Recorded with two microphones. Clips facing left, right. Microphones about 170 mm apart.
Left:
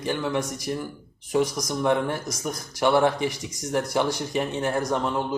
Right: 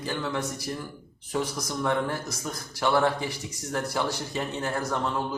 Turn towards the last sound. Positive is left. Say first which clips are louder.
# left 4 dB
turn(degrees=15)  # may be behind; listen again after turning